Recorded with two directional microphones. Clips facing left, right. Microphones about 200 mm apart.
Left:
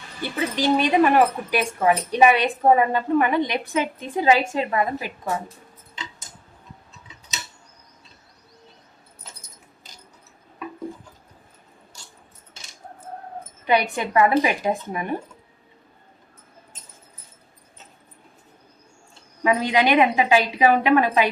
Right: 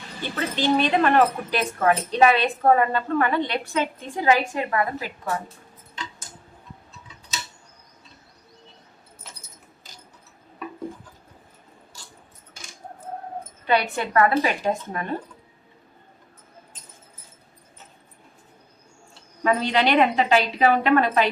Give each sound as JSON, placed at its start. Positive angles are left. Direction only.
{"t": 0.2, "sound": "a woman's voice", "side_deg": 10}
{"t": 13.7, "sound": "a woman's voice", "side_deg": 15}
{"t": 19.4, "sound": "a woman's voice", "side_deg": 10}